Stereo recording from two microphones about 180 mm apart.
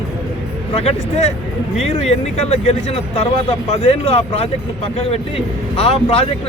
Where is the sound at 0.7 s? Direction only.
35° left (ahead or behind).